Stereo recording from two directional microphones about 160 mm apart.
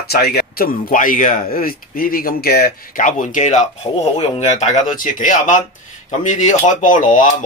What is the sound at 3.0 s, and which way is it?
Speech, 50° left (ahead or behind).